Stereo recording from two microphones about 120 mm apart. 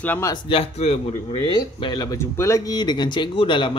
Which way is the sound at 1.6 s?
40° left (ahead or behind).